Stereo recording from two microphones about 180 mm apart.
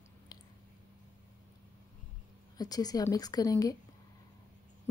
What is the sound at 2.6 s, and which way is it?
Speech, 20° left (ahead or behind).